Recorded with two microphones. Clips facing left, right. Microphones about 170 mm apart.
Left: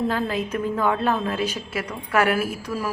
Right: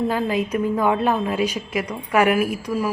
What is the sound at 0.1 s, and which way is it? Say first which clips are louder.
A woman's voice: right 3 dB; 10° right (ahead or behind).